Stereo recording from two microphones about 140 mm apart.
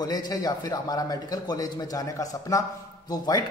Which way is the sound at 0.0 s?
30° left (ahead or behind).